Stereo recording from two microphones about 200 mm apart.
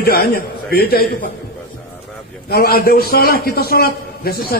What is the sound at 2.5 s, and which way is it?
A man's voice, 50° left (ahead or behind).